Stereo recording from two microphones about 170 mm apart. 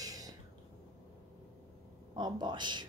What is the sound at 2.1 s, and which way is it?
Speech, 25° right (ahead or behind).